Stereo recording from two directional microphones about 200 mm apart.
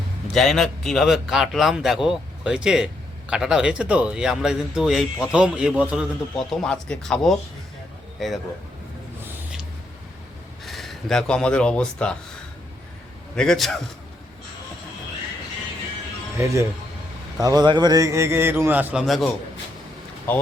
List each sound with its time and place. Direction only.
0.3 s a man's voice: centre (ahead or behind)
9.2 s a sound: 5° right (ahead or behind)
10.7 s speech: centre (ahead or behind)
13.3 s a man's voice: 5° left (ahead or behind)
17.4 s a man's voice: 20° right (ahead or behind); by 20.4 s 10° left (ahead or behind)